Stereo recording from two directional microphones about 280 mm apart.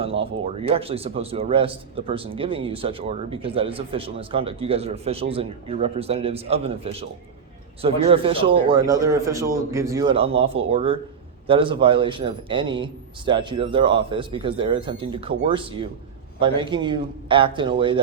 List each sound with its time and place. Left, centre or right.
0.0 s a man's voice: centre